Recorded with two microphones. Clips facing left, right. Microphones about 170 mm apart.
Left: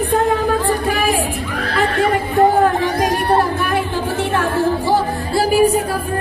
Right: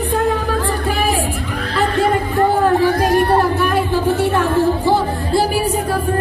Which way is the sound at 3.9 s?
10° right (ahead or behind).